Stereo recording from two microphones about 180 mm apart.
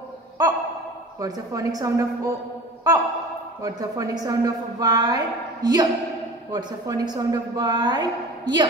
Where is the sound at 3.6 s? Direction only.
20° right (ahead or behind).